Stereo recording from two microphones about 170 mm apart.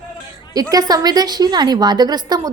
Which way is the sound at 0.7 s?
20° right (ahead or behind).